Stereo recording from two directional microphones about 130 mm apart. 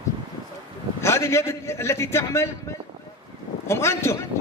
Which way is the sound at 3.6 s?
20° left (ahead or behind).